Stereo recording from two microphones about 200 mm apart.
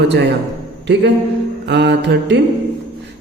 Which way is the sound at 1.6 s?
60° right (ahead or behind).